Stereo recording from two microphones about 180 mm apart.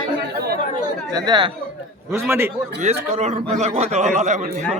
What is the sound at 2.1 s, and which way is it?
Speech, 15° right (ahead or behind).